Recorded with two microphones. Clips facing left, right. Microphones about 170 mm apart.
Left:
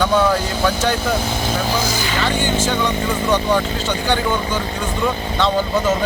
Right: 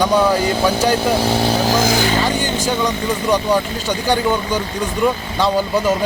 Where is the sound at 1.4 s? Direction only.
35° right (ahead or behind); by 2.0 s 50° right (ahead or behind).